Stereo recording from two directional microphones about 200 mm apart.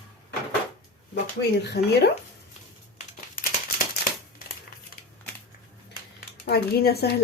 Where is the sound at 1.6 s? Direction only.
55° left (ahead or behind).